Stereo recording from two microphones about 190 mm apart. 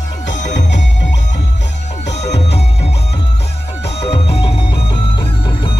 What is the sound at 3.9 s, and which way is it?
Music, 30° left (ahead or behind).